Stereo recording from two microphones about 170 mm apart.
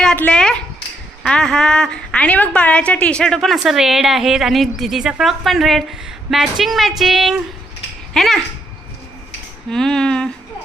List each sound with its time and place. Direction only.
0.0 s a sound: 5° left (ahead or behind)
1.2 s a woman's voice: 5° left (ahead or behind)
9.6 s a woman's voice: 5° left (ahead or behind)